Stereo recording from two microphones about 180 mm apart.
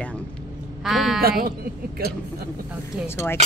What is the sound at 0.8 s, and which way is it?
Speech, centre (ahead or behind).